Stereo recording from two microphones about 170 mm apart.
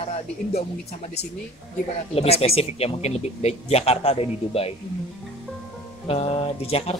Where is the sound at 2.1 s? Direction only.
35° left (ahead or behind).